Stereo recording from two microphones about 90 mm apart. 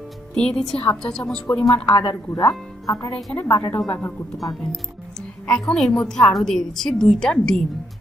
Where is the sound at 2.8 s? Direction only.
40° left (ahead or behind).